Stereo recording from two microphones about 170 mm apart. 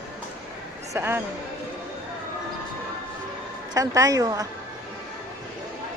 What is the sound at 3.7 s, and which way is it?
Speech, 20° right (ahead or behind).